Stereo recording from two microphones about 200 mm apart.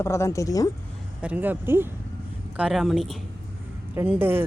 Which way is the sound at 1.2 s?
10° right (ahead or behind).